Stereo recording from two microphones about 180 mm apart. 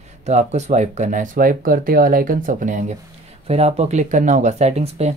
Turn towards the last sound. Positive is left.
turn(degrees=-35)  # may be behind; listen again after turning